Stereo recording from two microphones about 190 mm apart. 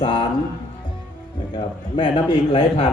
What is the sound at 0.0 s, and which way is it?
Speech, 25° left (ahead or behind).